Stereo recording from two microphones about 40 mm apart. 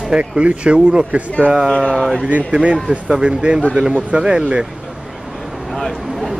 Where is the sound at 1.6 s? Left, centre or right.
Centre.